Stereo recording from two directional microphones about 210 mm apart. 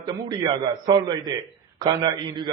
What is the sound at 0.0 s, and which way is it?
A man's voice, 20° right (ahead or behind).